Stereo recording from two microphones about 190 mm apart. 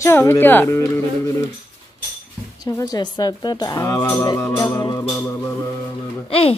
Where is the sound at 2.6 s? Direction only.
20° left (ahead or behind).